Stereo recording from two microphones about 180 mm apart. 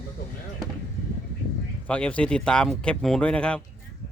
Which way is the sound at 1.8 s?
5° left (ahead or behind).